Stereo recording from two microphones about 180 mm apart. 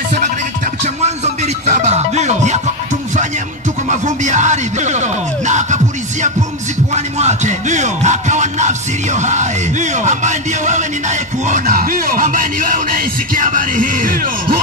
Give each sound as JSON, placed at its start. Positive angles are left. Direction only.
{"t": 1.0, "sound": "music", "side_deg": -40}
{"t": 3.9, "sound": "music", "side_deg": -40}
{"t": 7.2, "sound": "music", "side_deg": -40}